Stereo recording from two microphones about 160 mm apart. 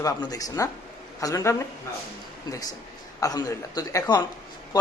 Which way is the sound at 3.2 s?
20° left (ahead or behind).